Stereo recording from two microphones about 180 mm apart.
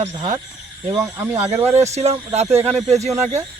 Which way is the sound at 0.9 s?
15° right (ahead or behind).